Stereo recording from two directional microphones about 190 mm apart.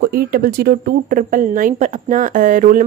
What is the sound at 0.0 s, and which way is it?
Speech, 50° right (ahead or behind).